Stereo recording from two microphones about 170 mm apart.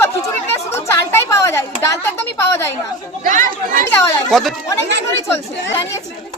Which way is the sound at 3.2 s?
50° right (ahead or behind).